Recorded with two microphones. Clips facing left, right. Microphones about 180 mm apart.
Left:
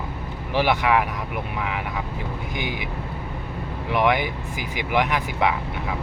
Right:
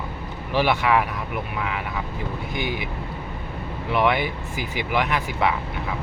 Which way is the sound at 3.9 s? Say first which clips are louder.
Even; 15° left (ahead or behind).